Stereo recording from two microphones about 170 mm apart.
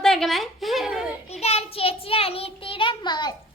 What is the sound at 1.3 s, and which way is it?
Child singing, 40° left (ahead or behind).